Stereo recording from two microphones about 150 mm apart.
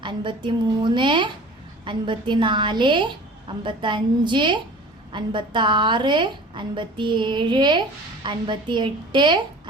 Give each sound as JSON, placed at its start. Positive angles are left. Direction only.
{"t": 0.0, "sound": "a woman's voice", "side_deg": -30}